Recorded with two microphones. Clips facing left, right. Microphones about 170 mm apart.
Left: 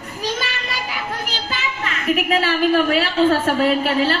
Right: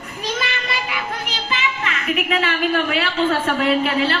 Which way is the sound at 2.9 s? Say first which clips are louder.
Left 3 dB; 40° left (ahead or behind).